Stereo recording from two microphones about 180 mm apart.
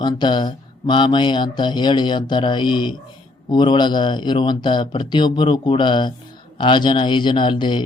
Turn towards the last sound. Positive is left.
turn(degrees=25)  # may be behind; listen again after turning